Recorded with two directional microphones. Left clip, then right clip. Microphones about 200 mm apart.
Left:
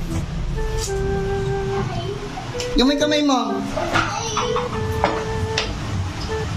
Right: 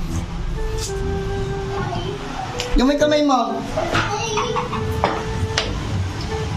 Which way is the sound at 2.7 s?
Centre (ahead or behind).